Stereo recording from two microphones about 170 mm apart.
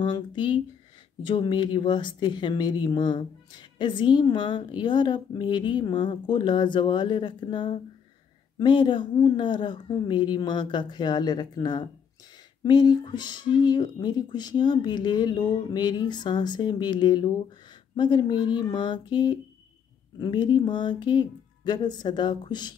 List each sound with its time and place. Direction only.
0.0 s speech: 25° left (ahead or behind)